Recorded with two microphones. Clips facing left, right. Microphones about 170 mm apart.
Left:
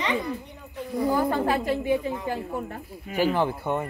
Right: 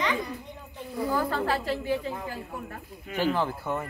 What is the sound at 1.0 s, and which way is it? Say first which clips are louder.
A woman's voice: left 4 dB; 15° left (ahead or behind).